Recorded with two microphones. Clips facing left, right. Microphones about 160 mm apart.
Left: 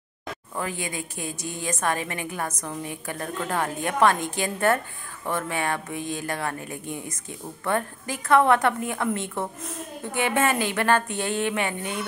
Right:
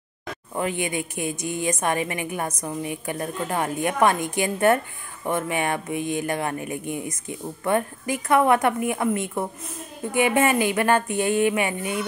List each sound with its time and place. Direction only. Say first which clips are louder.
0.6 s speech: right 5 dB; 20° right (ahead or behind)